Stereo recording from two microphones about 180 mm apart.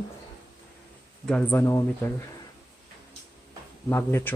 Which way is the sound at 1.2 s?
5° left (ahead or behind).